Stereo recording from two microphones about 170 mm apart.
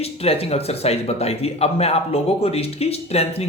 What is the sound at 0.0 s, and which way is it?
A man's voice, 35° left (ahead or behind).